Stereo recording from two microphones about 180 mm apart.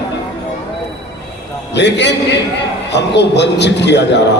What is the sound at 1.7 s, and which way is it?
A man's voice, 75° left (ahead or behind).